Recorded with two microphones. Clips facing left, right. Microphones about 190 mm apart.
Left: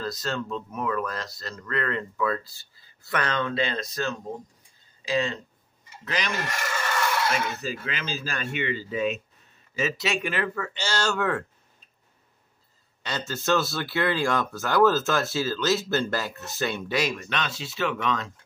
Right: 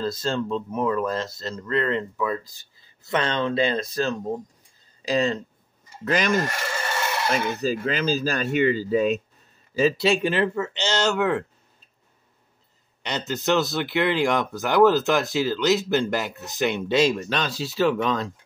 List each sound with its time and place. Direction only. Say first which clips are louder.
0.0 s speech: right 5 dB; 25° right (ahead or behind)
5.0 s speech: right 4 dB; 40° right (ahead or behind)
6.0 s a sound: right 8 dB; 45° right (ahead or behind)
6.4 s filing: right 2 dB; 30° right (ahead or behind)
7.8 s speech: right 10 dB; 40° right (ahead or behind); by 11.4 s 20° right (ahead or behind)
13.0 s speech: right 4 dB; 20° right (ahead or behind); by 18.3 s 35° right (ahead or behind)